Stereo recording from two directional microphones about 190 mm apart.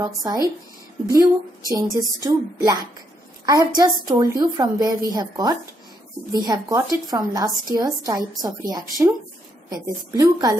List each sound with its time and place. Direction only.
0.0 s a woman's voice: 20° right (ahead or behind)
1.7 s a woman's voice: 20° right (ahead or behind)